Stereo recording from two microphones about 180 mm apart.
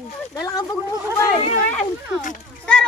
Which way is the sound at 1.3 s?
35° left (ahead or behind).